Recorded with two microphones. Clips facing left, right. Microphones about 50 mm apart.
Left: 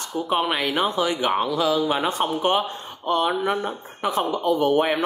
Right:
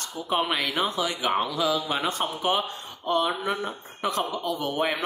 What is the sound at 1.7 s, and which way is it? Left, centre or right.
Speech, left.